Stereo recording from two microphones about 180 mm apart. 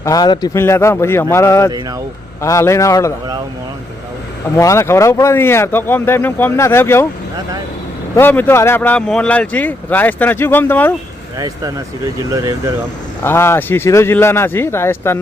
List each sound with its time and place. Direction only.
0.0 s speech: 20° left (ahead or behind)
4.5 s speech: 15° left (ahead or behind)
8.1 s speech: 10° left (ahead or behind)
11.3 s speech: 20° right (ahead or behind)
13.2 s speech: 15° left (ahead or behind)